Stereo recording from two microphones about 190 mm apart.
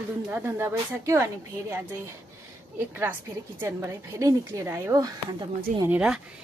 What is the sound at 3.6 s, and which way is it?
Speech, 15° right (ahead or behind).